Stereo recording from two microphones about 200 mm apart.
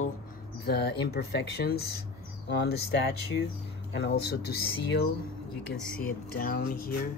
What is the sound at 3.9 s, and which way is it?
Speech, 60° left (ahead or behind).